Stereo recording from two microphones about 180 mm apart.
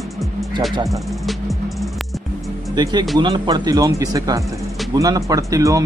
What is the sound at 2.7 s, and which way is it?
Speech, 25° right (ahead or behind).